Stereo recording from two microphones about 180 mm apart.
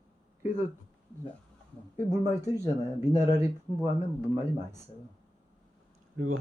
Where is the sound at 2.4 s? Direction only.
15° right (ahead or behind).